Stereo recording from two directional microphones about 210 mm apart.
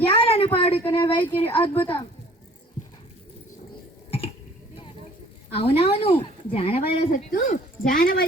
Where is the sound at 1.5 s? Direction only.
25° left (ahead or behind).